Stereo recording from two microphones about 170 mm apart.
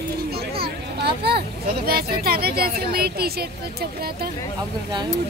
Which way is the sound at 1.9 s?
65° right (ahead or behind).